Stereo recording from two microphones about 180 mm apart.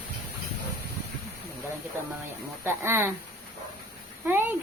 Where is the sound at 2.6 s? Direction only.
15° right (ahead or behind).